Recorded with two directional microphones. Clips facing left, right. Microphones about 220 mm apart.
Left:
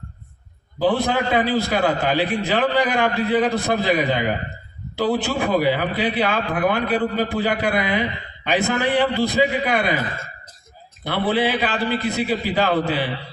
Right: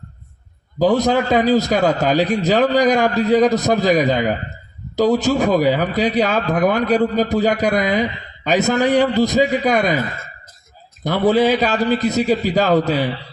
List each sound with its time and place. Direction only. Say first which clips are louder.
0.8 s a man's voice: right 4 dB; 40° right (ahead or behind)
11.0 s a man's voice: right 6 dB; 40° right (ahead or behind)